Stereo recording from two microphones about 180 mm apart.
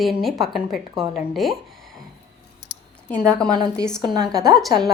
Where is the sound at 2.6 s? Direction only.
70° left (ahead or behind).